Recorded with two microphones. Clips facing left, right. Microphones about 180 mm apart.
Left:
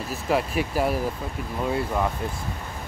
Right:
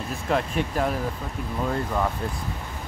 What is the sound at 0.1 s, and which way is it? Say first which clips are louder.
Speech: left 1 dB; 5° left (ahead or behind).